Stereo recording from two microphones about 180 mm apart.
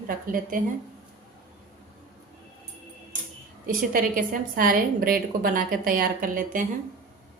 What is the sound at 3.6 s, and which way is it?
A woman's voice, 50° right (ahead or behind).